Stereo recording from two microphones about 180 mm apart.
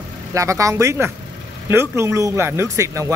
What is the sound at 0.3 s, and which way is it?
Speech, 15° right (ahead or behind).